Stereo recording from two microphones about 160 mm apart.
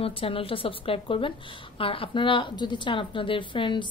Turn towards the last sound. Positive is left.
turn(degrees=30)  # may be behind; listen again after turning